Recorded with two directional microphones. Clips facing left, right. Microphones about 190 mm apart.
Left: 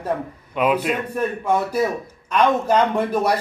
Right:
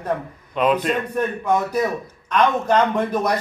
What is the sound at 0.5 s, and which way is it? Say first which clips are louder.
Speech: right 1 dB; 10° left (ahead or behind).